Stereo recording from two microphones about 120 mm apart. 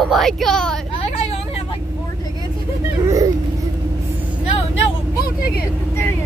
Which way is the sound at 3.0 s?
25° right (ahead or behind).